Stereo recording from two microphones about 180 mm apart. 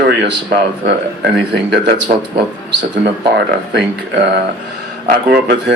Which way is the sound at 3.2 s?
65° right (ahead or behind).